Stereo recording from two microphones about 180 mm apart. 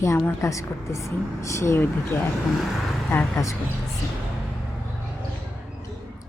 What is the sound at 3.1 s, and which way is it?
Speech, 15° left (ahead or behind).